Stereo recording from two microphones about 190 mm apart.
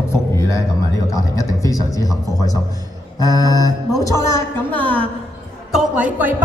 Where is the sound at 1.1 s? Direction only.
15° left (ahead or behind).